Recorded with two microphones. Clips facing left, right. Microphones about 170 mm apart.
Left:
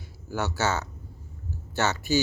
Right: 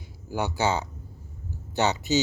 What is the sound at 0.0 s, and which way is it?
Speech, 15° right (ahead or behind).